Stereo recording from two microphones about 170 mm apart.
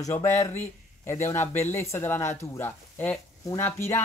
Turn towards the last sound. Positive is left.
turn(degrees=15)  # may be behind; listen again after turning